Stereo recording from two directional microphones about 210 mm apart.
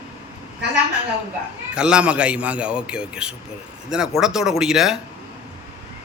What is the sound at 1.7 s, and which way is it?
A man's voice, 5° right (ahead or behind).